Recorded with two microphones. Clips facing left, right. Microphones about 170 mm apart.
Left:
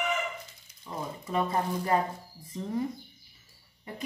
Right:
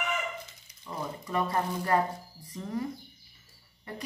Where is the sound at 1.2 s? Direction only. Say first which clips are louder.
Left 1 dB; 20° left (ahead or behind).